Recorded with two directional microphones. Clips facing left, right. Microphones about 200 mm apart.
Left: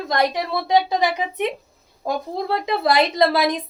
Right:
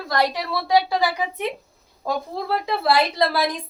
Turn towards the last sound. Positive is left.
turn(degrees=20)  # may be behind; listen again after turning